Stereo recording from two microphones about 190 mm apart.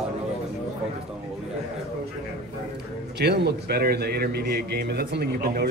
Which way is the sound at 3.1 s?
60° right (ahead or behind).